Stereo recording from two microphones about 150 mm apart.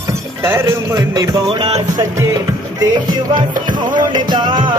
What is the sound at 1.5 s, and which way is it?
Music, 35° right (ahead or behind).